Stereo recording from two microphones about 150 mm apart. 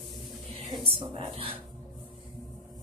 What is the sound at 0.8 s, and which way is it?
Speech, 40° right (ahead or behind).